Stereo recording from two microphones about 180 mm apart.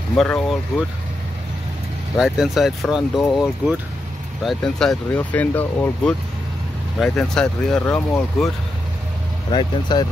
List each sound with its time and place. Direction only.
0.1 s speech: 5° left (ahead or behind)
2.1 s speech: centre (ahead or behind)
9.5 s speech: 25° left (ahead or behind)